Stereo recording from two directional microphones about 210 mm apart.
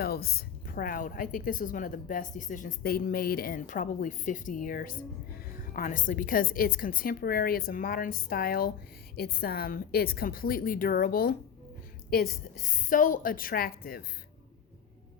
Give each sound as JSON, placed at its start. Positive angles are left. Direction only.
{"t": 0.0, "sound": "a woman's voice", "side_deg": 45}